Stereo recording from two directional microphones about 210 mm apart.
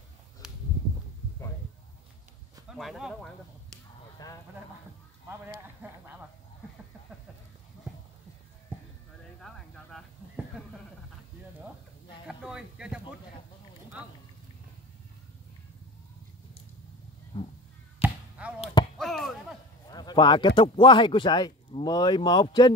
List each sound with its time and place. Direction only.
0.4 s a sound: 5° right (ahead or behind)
2.7 s speech: centre (ahead or behind)
9.4 s a sound: centre (ahead or behind)
12.3 s a sound: 5° right (ahead or behind)
17.3 s cat: 25° left (ahead or behind)
18.0 s basketball bounce: 5° right (ahead or behind)
18.4 s chop: 5° right (ahead or behind)
18.9 s basketball bounce: centre (ahead or behind)
19.9 s speech: 20° left (ahead or behind)